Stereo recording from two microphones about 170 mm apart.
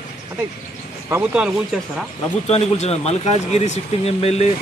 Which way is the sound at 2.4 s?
40° left (ahead or behind).